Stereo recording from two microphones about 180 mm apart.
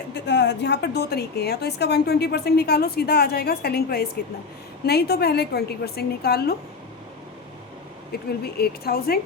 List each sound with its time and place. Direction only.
0.1 s a woman's voice: 75° left (ahead or behind)
8.1 s a woman's voice: 60° left (ahead or behind)